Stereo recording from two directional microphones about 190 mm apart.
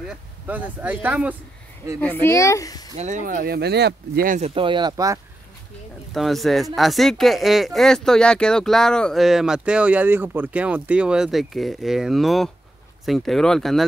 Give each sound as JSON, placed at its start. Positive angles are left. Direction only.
{"t": 0.1, "sound": "speech", "side_deg": -10}
{"t": 2.0, "sound": "speech", "side_deg": 10}
{"t": 3.0, "sound": "speech", "side_deg": -40}
{"t": 4.6, "sound": "speech", "side_deg": -25}
{"t": 6.1, "sound": "speech", "side_deg": 0}